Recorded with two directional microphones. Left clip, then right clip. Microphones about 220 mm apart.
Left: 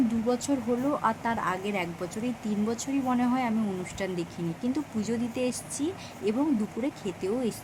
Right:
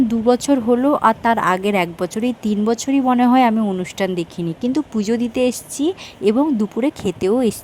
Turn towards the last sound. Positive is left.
turn(degrees=-45)  # may be behind; listen again after turning